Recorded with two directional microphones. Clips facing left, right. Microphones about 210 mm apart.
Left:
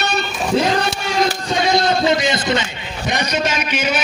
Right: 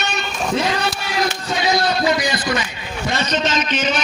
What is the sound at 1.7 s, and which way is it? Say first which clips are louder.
A man's voice: left 3 dB; 25° left (ahead or behind).